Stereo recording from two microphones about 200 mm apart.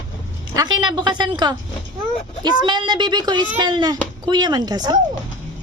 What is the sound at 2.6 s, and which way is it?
A woman's voice, 20° right (ahead or behind).